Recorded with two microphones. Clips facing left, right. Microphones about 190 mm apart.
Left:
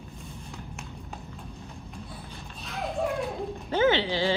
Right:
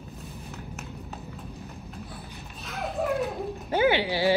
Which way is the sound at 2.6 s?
Centre (ahead or behind).